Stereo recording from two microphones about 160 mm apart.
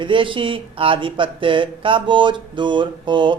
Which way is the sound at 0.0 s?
30° right (ahead or behind).